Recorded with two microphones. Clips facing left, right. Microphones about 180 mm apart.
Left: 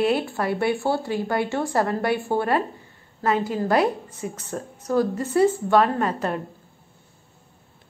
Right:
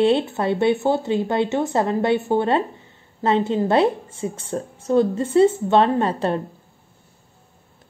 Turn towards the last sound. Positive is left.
turn(degrees=-30)  # may be behind; listen again after turning